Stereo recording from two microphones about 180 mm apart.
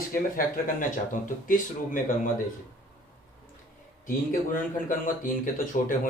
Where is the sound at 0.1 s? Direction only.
50° left (ahead or behind).